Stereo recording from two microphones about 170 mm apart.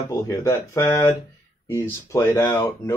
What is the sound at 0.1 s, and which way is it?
Speech, 15° left (ahead or behind).